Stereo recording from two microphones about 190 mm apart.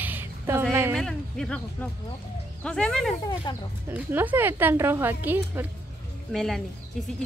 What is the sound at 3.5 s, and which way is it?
Speech, 20° left (ahead or behind).